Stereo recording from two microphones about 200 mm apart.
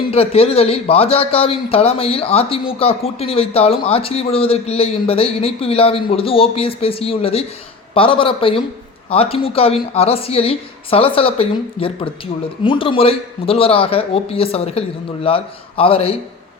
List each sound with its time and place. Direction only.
0.1 s a man's voice: 30° left (ahead or behind)